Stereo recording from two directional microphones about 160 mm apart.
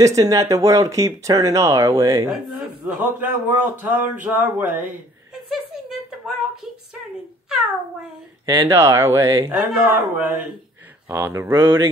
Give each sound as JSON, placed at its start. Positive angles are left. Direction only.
{"t": 0.0, "sound": "speech", "side_deg": -20}
{"t": 2.4, "sound": "speech", "side_deg": -5}
{"t": 5.5, "sound": "a sound", "side_deg": -5}
{"t": 8.5, "sound": "speech", "side_deg": -20}
{"t": 9.5, "sound": "speech", "side_deg": -5}